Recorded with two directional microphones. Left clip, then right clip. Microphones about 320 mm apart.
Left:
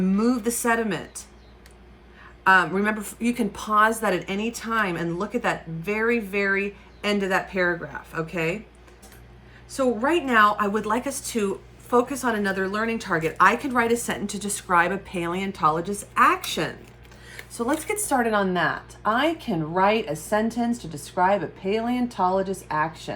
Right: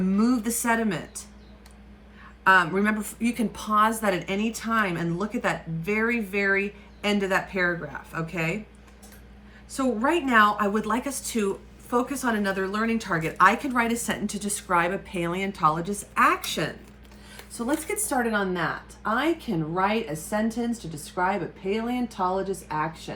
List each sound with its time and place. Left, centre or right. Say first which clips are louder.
0.0 s a woman's voice: left 2 dB; centre
2.4 s a woman's voice: left 1 dB; centre
9.7 s a woman's voice: left 2 dB; centre